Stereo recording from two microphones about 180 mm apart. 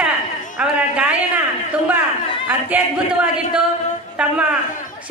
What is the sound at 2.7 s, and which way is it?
Speech, 10° right (ahead or behind).